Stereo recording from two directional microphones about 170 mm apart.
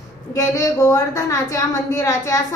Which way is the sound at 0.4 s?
20° left (ahead or behind).